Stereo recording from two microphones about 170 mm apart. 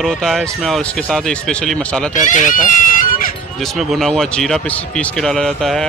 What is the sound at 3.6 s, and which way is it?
Speech, centre (ahead or behind).